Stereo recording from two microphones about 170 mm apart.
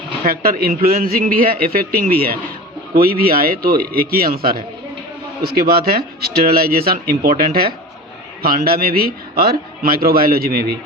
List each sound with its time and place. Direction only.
0.3 s a man's voice: 60° right (ahead or behind)